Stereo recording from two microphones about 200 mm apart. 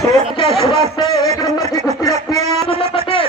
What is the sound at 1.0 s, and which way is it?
Music, 20° left (ahead or behind).